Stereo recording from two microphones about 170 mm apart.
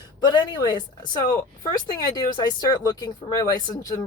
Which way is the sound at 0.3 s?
25° left (ahead or behind).